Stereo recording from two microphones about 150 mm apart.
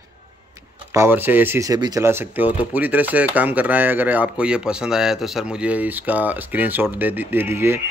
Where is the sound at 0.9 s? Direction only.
15° right (ahead or behind).